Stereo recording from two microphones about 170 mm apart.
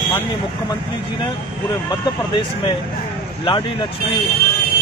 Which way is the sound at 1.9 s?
25° left (ahead or behind).